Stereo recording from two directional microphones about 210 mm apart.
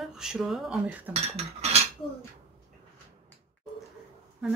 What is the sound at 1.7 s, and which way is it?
Dishes, 30° right (ahead or behind).